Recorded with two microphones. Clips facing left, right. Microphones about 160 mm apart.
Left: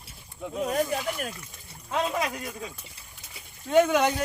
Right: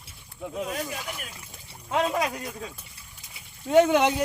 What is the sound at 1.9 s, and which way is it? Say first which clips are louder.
Speech: right 3 dB; 15° right (ahead or behind).